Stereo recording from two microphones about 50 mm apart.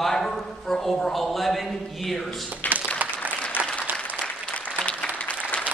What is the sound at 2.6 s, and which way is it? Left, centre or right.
Applause, left.